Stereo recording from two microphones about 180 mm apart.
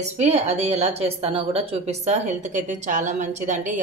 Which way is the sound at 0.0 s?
35° right (ahead or behind).